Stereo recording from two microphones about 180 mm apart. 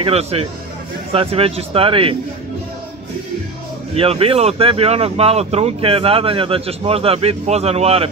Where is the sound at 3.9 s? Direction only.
35° right (ahead or behind).